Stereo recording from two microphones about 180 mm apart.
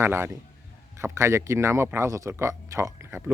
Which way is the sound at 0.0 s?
15° right (ahead or behind).